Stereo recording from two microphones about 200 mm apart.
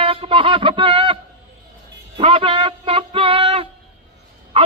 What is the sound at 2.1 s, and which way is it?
Music, 25° right (ahead or behind).